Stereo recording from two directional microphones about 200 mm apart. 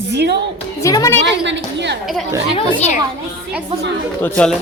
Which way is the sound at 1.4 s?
60° right (ahead or behind).